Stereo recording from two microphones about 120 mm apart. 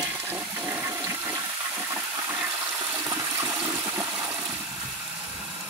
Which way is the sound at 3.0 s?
25° right (ahead or behind).